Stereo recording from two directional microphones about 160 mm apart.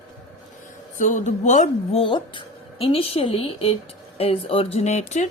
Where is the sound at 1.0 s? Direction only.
50° left (ahead or behind).